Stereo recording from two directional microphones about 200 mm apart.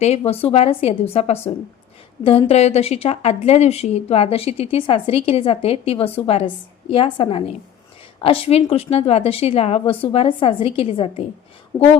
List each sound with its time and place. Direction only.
0.0 s a woman's voice: 30° left (ahead or behind)